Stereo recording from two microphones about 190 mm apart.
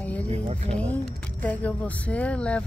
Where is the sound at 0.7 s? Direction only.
5° left (ahead or behind).